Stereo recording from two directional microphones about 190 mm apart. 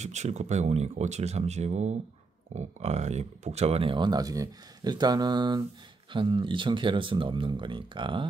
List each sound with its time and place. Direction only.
0.0 s speech: 35° right (ahead or behind)